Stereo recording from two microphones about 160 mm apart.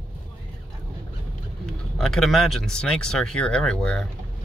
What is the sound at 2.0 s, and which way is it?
Speech, centre (ahead or behind).